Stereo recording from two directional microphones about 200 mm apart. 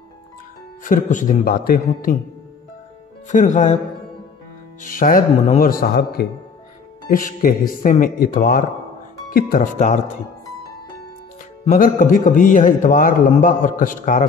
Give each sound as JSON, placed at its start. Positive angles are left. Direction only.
{"t": 0.8, "sound": "speech", "side_deg": 40}
{"t": 3.3, "sound": "a man's voice", "side_deg": 40}
{"t": 4.8, "sound": "a man's voice", "side_deg": 40}
{"t": 11.8, "sound": "a man's voice", "side_deg": 40}